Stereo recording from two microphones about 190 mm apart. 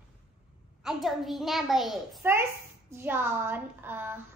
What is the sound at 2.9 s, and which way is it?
A child's voice, 10° right (ahead or behind).